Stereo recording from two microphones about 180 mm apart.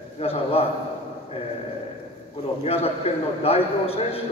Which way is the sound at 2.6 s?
35° left (ahead or behind).